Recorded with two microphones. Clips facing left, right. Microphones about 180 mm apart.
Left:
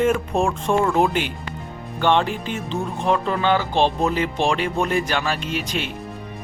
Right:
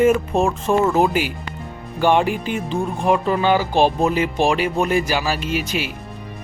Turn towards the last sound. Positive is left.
turn(degrees=-5)  # may be behind; listen again after turning